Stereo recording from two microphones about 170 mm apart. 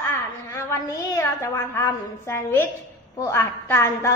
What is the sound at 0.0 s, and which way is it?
A woman's voice, 15° left (ahead or behind).